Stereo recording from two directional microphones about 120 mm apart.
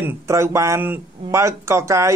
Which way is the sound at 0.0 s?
25° right (ahead or behind).